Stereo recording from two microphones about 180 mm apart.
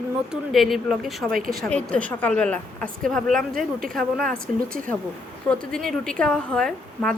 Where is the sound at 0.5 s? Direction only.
Centre (ahead or behind).